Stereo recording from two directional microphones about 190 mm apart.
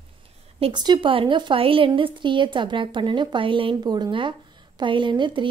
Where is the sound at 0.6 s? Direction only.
25° right (ahead or behind).